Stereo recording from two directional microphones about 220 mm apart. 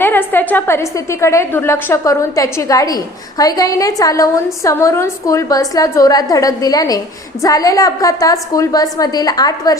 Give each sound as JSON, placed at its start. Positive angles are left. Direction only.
{"t": 0.0, "sound": "a woman's voice", "side_deg": 10}